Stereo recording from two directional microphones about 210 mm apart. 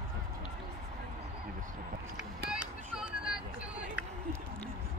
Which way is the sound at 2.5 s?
5° right (ahead or behind).